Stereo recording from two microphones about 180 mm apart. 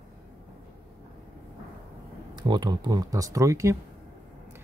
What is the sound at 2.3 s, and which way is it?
Speech, 25° right (ahead or behind).